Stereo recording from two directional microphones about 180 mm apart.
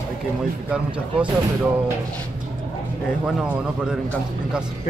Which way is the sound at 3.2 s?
5° right (ahead or behind).